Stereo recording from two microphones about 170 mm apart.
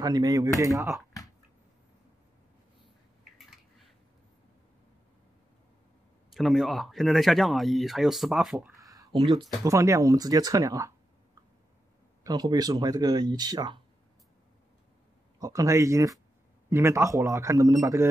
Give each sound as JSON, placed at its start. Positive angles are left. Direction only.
{"t": 0.0, "sound": "speech", "side_deg": -20}
{"t": 6.3, "sound": "speech", "side_deg": 0}
{"t": 8.7, "sound": "a sound", "side_deg": -20}
{"t": 9.7, "sound": "speech", "side_deg": -20}
{"t": 12.2, "sound": "speech", "side_deg": -25}
{"t": 15.3, "sound": "speech", "side_deg": -20}